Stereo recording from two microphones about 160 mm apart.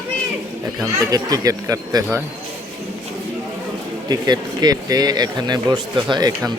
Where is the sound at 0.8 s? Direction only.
20° right (ahead or behind).